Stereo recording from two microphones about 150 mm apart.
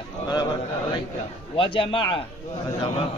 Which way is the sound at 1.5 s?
35° left (ahead or behind).